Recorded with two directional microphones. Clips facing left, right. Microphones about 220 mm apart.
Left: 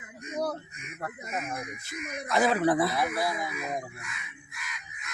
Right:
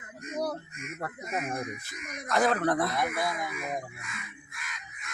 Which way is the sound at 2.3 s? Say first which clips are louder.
Left 1 dB; centre (ahead or behind).